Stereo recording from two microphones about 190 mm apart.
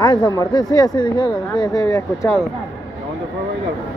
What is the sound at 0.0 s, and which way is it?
Speech, 20° left (ahead or behind).